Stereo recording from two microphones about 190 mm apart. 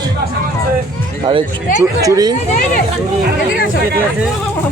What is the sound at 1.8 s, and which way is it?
Speech, 15° right (ahead or behind).